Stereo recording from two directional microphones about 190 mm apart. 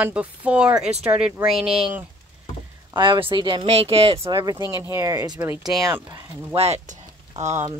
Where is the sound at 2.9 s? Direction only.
25° right (ahead or behind).